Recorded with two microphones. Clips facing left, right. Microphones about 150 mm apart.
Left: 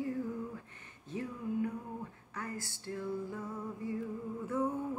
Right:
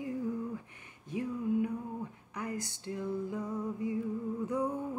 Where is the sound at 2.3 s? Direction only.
15° right (ahead or behind).